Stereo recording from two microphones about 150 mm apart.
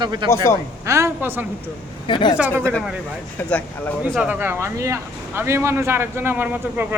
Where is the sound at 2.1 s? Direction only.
35° left (ahead or behind).